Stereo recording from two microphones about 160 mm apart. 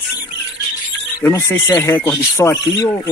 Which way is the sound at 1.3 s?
15° left (ahead or behind).